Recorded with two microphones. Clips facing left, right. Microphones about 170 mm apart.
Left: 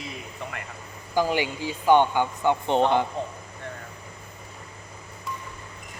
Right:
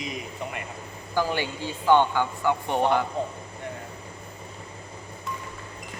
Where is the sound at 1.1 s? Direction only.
15° left (ahead or behind).